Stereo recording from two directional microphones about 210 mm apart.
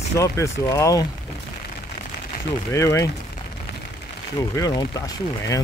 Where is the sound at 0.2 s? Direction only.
15° left (ahead or behind).